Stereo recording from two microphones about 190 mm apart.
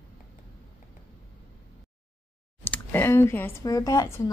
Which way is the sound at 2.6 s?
10° left (ahead or behind).